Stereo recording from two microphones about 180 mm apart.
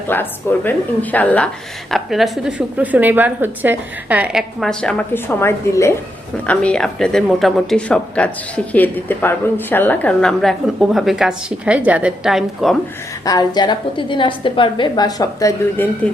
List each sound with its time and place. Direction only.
0.1 s a woman's voice: 10° left (ahead or behind)
13.2 s a woman's voice: 20° left (ahead or behind)